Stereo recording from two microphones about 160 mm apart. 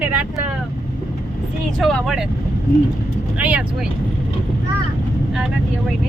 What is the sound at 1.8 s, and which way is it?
Speech, centre (ahead or behind).